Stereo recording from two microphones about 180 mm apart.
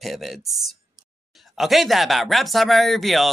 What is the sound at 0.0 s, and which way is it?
Speech, centre (ahead or behind).